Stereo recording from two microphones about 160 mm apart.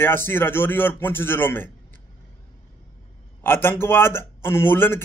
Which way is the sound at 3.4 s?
15° left (ahead or behind).